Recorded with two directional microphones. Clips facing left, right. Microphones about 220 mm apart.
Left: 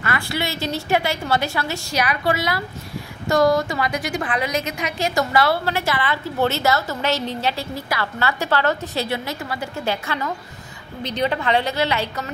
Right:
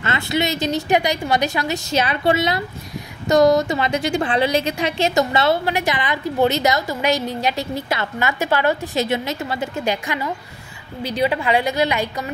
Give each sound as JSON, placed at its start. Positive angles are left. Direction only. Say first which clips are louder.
{"t": 0.0, "sound": "a woman's voice", "louder": "right 4 dB", "side_deg": -20}